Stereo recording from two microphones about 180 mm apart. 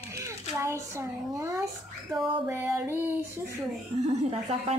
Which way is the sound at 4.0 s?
40° right (ahead or behind).